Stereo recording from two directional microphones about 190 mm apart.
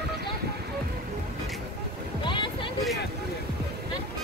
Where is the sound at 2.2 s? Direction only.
25° left (ahead or behind).